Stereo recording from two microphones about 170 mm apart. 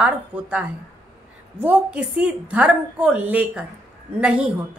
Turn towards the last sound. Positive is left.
turn(degrees=-5)  # may be behind; listen again after turning